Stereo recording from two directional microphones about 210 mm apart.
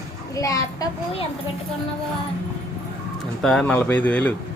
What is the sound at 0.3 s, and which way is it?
Speech, 15° left (ahead or behind).